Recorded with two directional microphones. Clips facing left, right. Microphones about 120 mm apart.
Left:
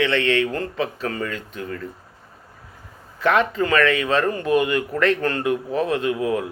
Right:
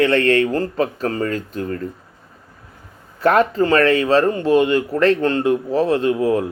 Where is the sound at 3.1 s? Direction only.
40° right (ahead or behind).